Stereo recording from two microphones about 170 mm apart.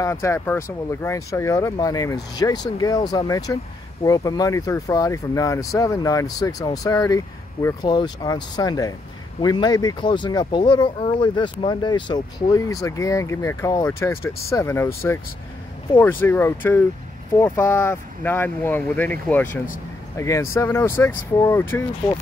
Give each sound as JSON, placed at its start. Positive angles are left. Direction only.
{"t": 0.0, "sound": "speech", "side_deg": 15}